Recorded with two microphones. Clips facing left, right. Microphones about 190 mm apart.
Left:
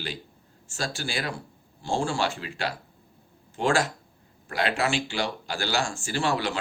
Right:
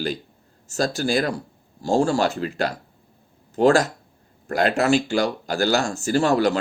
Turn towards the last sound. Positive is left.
turn(degrees=-40)  # may be behind; listen again after turning